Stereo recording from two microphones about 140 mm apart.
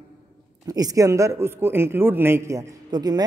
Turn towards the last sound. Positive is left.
turn(degrees=-30)  # may be behind; listen again after turning